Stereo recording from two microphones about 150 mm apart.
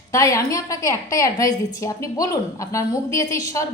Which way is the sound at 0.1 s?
20° left (ahead or behind).